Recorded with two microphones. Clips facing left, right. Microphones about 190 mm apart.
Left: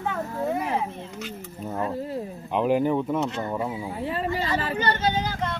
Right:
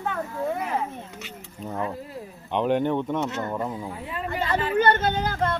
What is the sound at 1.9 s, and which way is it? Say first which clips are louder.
Speech: left 6 dB; 30° left (ahead or behind).